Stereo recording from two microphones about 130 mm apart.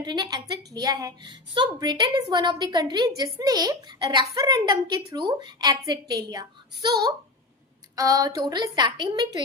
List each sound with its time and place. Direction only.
0.0 s a woman's voice: 35° right (ahead or behind)